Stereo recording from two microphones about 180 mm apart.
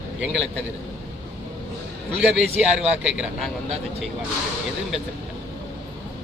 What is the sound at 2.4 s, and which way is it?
A man's voice, 5° right (ahead or behind).